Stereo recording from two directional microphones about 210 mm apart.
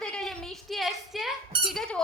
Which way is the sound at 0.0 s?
Centre (ahead or behind).